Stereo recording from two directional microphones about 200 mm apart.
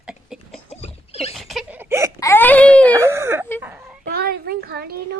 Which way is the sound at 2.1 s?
15° left (ahead or behind).